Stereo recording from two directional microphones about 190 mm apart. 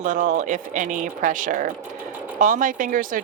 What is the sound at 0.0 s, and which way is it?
Speech, 40° right (ahead or behind).